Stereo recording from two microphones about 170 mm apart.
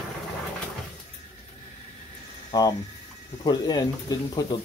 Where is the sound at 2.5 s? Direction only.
20° left (ahead or behind).